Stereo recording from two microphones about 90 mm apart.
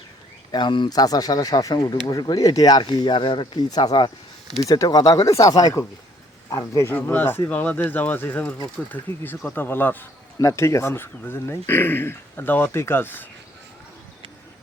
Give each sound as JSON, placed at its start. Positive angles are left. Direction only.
{"t": 0.5, "sound": "speech", "side_deg": 60}
{"t": 4.6, "sound": "speech", "side_deg": 40}
{"t": 6.9, "sound": "speech", "side_deg": 20}
{"t": 10.3, "sound": "speech", "side_deg": 35}